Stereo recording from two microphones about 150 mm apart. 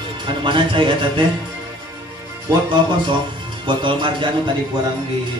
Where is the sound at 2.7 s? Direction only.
30° right (ahead or behind).